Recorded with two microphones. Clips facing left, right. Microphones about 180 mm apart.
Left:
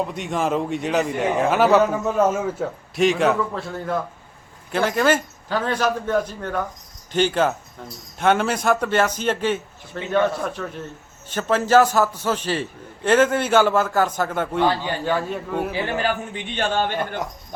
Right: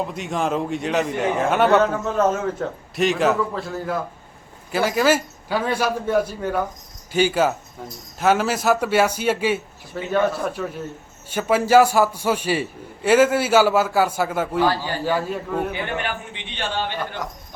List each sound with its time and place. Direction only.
0.0 s a man's voice: centre (ahead or behind)
15.7 s a man's voice: 35° left (ahead or behind)